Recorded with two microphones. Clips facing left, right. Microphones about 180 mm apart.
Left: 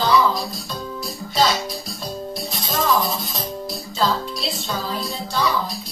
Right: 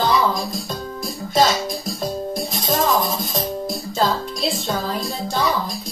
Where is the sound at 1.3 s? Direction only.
50° right (ahead or behind).